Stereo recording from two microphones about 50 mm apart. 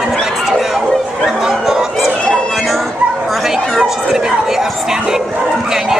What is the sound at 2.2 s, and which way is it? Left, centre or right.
Music, centre.